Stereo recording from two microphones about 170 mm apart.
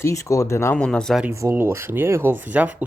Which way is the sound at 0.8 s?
5° left (ahead or behind).